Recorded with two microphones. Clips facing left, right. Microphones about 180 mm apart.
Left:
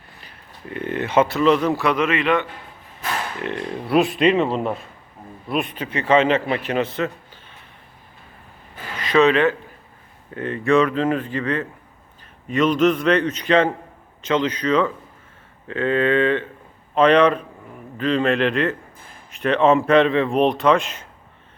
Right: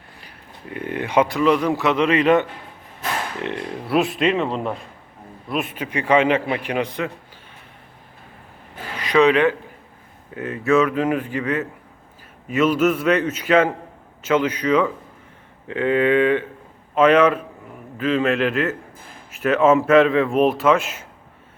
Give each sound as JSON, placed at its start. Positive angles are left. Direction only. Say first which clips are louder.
{"t": 0.7, "sound": "a man's voice", "louder": "left 1 dB", "side_deg": -10}
{"t": 2.0, "sound": "a man's voice", "louder": "right 4 dB", "side_deg": -40}
{"t": 3.8, "sound": "a man's voice", "louder": "left 2 dB", "side_deg": 0}
{"t": 9.0, "sound": "a man's voice", "louder": "even", "side_deg": -10}